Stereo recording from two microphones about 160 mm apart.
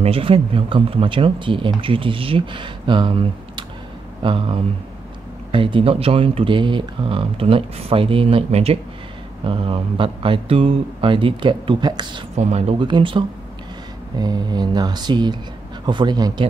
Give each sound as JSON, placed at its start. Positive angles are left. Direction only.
{"t": 0.0, "sound": "speech", "side_deg": -35}
{"t": 12.4, "sound": "speech", "side_deg": -45}